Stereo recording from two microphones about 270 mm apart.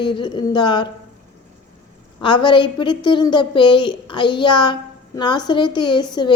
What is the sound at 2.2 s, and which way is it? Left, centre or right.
A woman's voice, centre.